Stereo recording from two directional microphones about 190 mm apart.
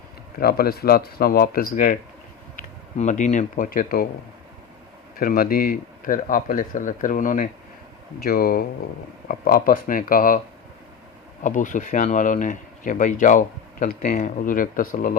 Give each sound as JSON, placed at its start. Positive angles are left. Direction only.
{"t": 0.3, "sound": "speech", "side_deg": 50}
{"t": 5.2, "sound": "speech", "side_deg": 50}
{"t": 11.4, "sound": "speech", "side_deg": 40}